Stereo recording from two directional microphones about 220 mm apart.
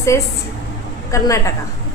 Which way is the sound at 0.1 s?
10° left (ahead or behind).